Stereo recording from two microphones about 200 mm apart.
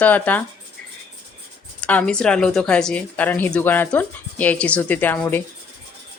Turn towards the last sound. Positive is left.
turn(degrees=10)  # may be behind; listen again after turning